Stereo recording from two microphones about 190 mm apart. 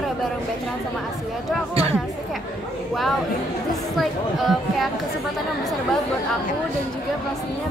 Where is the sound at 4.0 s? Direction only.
Centre (ahead or behind).